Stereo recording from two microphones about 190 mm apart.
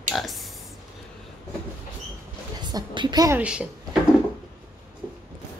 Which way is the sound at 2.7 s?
25° right (ahead or behind).